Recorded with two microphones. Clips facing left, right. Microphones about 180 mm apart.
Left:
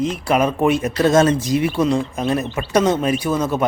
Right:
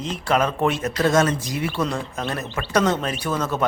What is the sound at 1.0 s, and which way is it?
Speech, 25° left (ahead or behind).